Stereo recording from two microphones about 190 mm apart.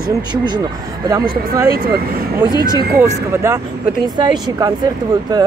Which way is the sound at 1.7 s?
55° right (ahead or behind).